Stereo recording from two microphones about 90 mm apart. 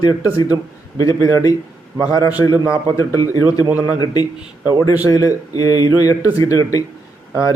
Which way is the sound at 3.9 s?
45° left (ahead or behind).